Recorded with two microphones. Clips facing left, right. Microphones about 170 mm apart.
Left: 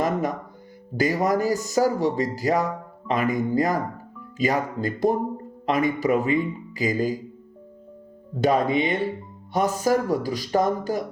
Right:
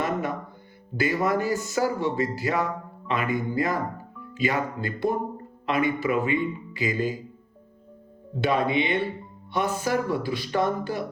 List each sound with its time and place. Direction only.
0.0 s music: 40° left (ahead or behind)
0.9 s speech: 40° left (ahead or behind)
8.4 s speech: 40° left (ahead or behind)